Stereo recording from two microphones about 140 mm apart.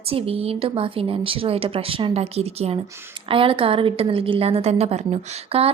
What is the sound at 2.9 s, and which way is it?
Speech, 15° right (ahead or behind).